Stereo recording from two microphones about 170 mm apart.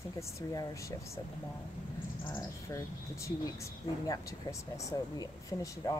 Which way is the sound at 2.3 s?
15° left (ahead or behind).